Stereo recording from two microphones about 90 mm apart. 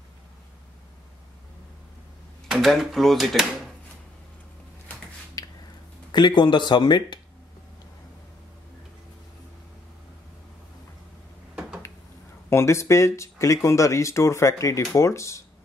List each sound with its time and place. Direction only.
2.4 s speech: centre (ahead or behind)
5.4 s a sound: 45° left (ahead or behind)
6.1 s speech: 55° left (ahead or behind)
12.4 s speech: 30° left (ahead or behind)